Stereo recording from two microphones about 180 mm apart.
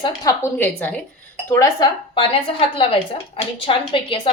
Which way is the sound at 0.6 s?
10° left (ahead or behind).